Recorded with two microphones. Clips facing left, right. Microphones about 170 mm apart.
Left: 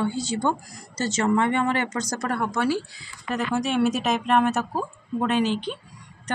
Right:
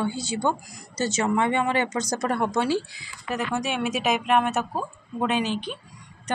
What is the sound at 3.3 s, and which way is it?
Speech, centre (ahead or behind).